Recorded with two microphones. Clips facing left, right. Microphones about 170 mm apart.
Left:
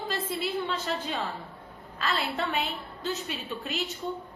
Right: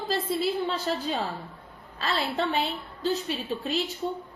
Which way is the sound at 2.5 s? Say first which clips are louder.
Right 3 dB; 35° right (ahead or behind).